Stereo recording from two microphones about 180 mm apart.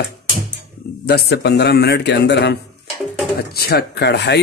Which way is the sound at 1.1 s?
65° left (ahead or behind).